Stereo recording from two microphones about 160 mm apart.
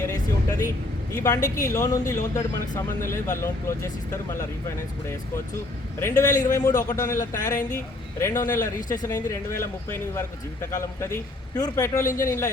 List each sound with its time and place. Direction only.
1.1 s a man's voice: 20° left (ahead or behind)
6.0 s a man's voice: 20° left (ahead or behind)